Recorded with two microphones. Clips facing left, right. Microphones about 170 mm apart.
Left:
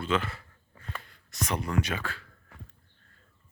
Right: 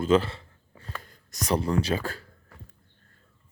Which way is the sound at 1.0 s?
40° right (ahead or behind).